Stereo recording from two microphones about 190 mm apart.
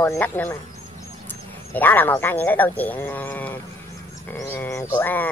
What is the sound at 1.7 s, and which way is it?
Speech, 10° left (ahead or behind).